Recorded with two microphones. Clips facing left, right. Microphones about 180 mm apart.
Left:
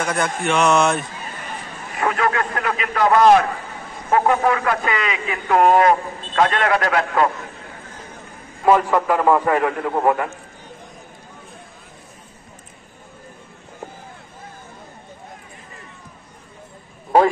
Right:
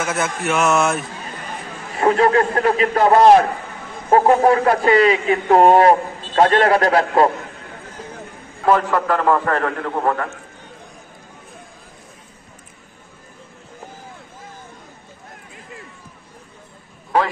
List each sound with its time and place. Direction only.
0.0 s speech: 5° right (ahead or behind)
2.0 s speech: 30° right (ahead or behind)
8.6 s a man's voice: 10° left (ahead or behind)